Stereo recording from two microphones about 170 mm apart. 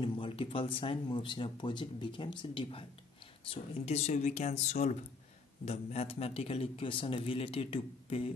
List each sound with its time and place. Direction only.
0.0 s a man's voice: 30° left (ahead or behind)